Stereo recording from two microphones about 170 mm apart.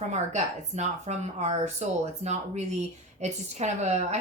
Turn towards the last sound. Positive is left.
turn(degrees=-40)  # may be behind; listen again after turning